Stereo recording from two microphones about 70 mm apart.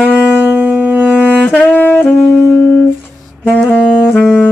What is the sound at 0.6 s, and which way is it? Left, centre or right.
Wind instrument, right.